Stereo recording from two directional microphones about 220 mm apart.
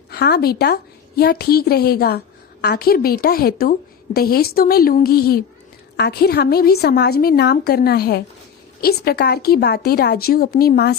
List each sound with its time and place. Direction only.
0.1 s a woman's voice: 45° left (ahead or behind)